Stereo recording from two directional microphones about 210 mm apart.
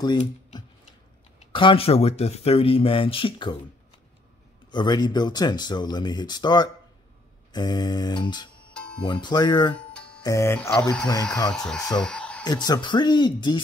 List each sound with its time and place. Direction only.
0.2 s a sound: 25° left (ahead or behind)
1.5 s speech: 25° left (ahead or behind)
4.6 s speech: 20° left (ahead or behind)
8.7 s music: 5° left (ahead or behind)
9.0 s speech: 20° left (ahead or behind)
9.8 s music: 5° left (ahead or behind)
10.2 s speech: 15° left (ahead or behind)
12.0 s a sound: 5° left (ahead or behind)
12.4 s speech: 20° left (ahead or behind)